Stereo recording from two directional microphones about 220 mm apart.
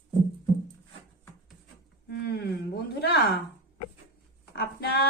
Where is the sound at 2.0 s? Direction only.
45° left (ahead or behind).